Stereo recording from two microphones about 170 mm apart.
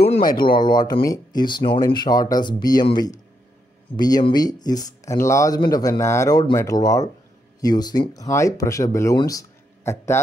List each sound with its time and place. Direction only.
0.6 s speech: 25° left (ahead or behind)